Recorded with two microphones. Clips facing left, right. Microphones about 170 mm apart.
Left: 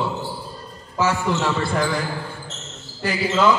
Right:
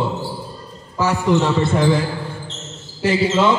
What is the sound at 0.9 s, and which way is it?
A man's voice, 15° right (ahead or behind).